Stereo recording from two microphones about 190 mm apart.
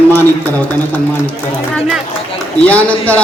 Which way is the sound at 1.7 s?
5° right (ahead or behind).